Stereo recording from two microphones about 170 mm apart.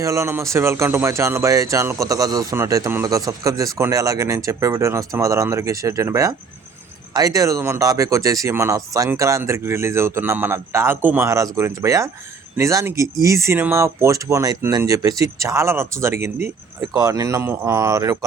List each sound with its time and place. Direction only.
0.0 s speech: 15° right (ahead or behind)